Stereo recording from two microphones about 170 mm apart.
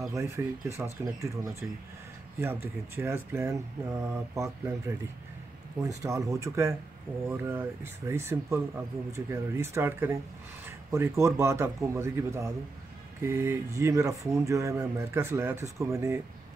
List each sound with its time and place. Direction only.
0.1 s speech: 15° right (ahead or behind)
2.4 s speech: 15° right (ahead or behind)